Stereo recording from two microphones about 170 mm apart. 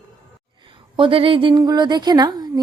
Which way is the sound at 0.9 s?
30° right (ahead or behind).